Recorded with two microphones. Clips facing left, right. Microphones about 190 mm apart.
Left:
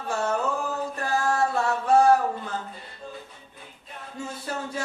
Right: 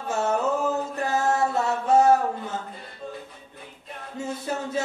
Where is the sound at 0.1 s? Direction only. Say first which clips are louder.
Right 2 dB; 20° right (ahead or behind).